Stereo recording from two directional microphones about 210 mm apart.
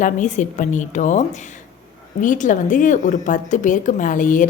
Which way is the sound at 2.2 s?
35° left (ahead or behind).